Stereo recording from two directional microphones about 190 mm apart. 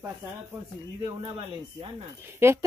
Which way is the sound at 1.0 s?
30° right (ahead or behind).